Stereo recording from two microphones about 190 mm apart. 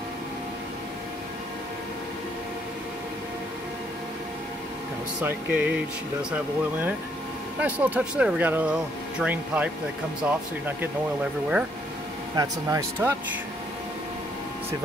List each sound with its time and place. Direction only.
5.2 s speech: 10° right (ahead or behind)
12.4 s speech: 15° right (ahead or behind)